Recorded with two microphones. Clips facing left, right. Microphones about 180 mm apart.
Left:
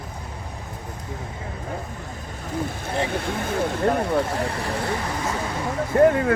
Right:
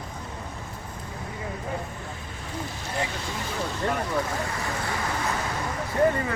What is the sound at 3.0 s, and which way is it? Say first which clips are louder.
Speech: left 7 dB; 55° left (ahead or behind).